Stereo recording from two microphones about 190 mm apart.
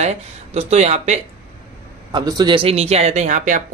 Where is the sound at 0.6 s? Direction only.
35° right (ahead or behind).